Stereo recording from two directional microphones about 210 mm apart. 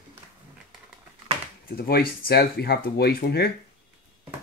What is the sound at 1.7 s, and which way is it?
Speech, 45° left (ahead or behind).